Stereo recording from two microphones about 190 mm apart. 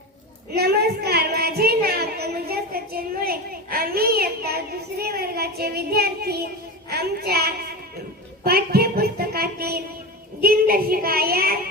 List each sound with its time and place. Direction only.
0.5 s child singing: 55° right (ahead or behind)
8.4 s a child's voice: 55° right (ahead or behind)